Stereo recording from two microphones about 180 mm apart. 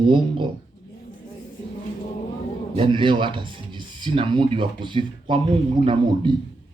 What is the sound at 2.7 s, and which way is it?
Speech, 30° right (ahead or behind).